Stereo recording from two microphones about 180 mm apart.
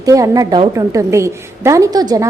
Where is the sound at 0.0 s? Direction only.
20° right (ahead or behind).